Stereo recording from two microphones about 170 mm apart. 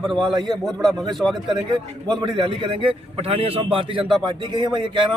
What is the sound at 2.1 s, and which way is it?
A man's voice, 30° right (ahead or behind).